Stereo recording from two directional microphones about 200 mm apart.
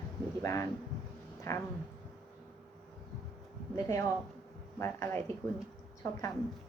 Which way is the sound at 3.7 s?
15° left (ahead or behind).